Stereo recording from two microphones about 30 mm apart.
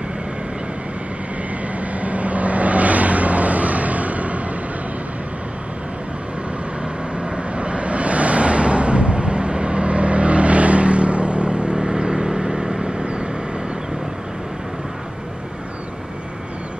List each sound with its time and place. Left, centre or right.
2.0 s vehicle: right
7.2 s vehicle: right